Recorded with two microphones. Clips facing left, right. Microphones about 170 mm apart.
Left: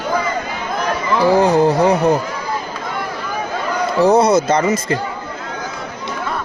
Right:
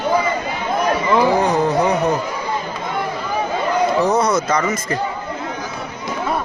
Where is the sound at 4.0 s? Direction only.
30° left (ahead or behind).